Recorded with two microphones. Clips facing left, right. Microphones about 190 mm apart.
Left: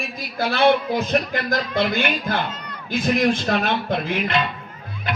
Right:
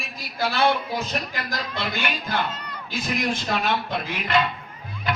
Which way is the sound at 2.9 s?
55° left (ahead or behind).